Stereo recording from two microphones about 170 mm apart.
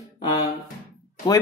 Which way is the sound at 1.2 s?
25° left (ahead or behind).